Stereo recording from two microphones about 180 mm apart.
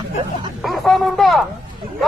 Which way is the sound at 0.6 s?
Centre (ahead or behind).